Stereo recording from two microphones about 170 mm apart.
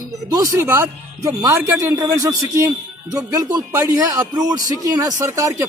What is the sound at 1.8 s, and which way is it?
A man's voice, 20° right (ahead or behind).